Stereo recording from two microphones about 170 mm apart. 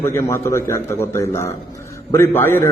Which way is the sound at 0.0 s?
15° left (ahead or behind).